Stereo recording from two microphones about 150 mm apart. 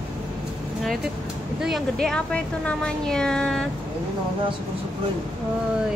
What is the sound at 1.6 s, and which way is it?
A woman's voice, centre (ahead or behind).